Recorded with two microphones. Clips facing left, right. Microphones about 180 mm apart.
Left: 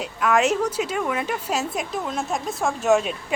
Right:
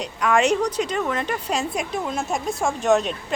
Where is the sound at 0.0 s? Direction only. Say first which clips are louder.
Right 1 dB; 5° left (ahead or behind).